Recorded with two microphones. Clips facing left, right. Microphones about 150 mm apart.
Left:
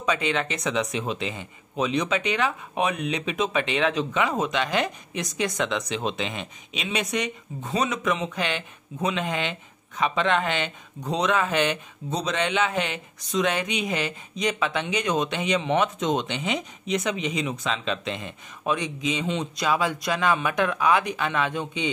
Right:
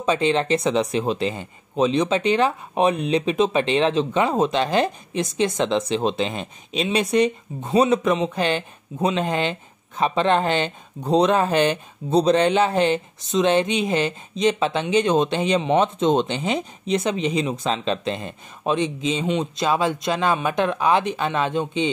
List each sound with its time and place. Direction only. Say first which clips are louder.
0.0 s speech: right 5 dB; 30° right (ahead or behind)